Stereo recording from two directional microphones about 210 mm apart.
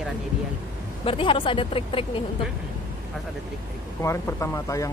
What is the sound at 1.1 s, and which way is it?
Speech, 25° left (ahead or behind).